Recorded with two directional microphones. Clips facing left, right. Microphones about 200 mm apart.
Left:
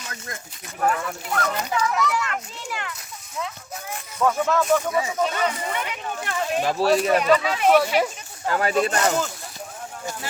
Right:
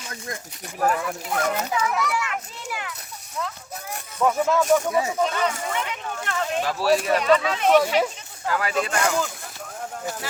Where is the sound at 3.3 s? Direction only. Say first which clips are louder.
Even; 5° left (ahead or behind).